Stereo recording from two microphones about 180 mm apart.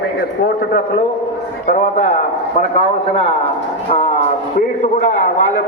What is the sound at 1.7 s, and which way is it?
Speech, 45° left (ahead or behind).